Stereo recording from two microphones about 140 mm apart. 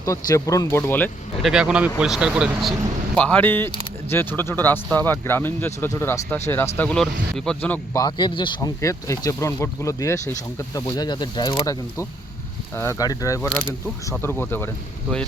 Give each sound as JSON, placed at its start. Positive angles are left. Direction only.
{"t": 0.0, "sound": "speech", "side_deg": 25}
{"t": 1.4, "sound": "speech", "side_deg": -5}
{"t": 3.2, "sound": "speech", "side_deg": 10}
{"t": 7.9, "sound": "speech", "side_deg": 30}
{"t": 8.8, "sound": "speech", "side_deg": 20}